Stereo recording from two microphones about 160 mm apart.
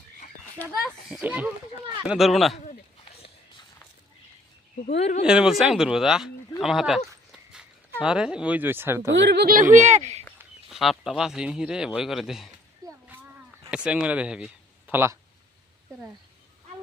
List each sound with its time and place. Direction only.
0.7 s speech: centre (ahead or behind)
4.9 s speech: 40° left (ahead or behind)
5.2 s speech: 5° right (ahead or behind)
8.0 s speech: 5° right (ahead or behind)
9.1 s speech: 90° right; by 10.2 s 45° right (ahead or behind)
10.7 s speech: centre (ahead or behind)
13.7 s speech: 5° right (ahead or behind)